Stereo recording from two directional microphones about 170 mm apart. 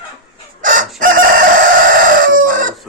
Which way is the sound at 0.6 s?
50° right (ahead or behind).